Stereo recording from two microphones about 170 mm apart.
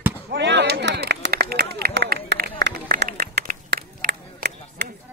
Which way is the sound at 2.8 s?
60° right (ahead or behind).